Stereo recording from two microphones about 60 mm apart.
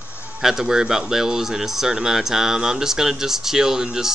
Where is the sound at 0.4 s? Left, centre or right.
Centre.